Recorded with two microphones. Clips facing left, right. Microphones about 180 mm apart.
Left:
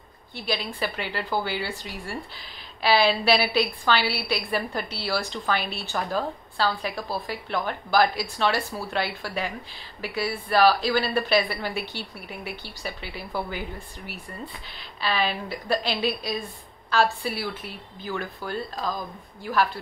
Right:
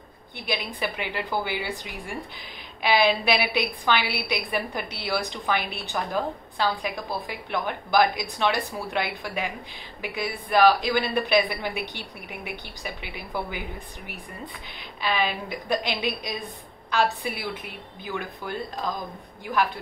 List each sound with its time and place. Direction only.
0.5 s a woman's voice: 15° right (ahead or behind)